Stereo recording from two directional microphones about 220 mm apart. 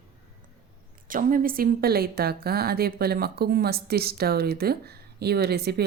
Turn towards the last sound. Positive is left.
turn(degrees=-45)  # may be behind; listen again after turning